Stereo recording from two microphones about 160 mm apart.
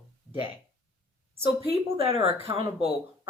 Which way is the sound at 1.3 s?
40° right (ahead or behind).